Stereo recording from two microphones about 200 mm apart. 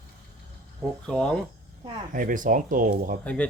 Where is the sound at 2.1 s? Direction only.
40° right (ahead or behind).